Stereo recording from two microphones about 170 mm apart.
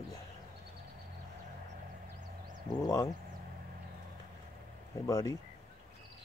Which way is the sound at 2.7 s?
20° left (ahead or behind).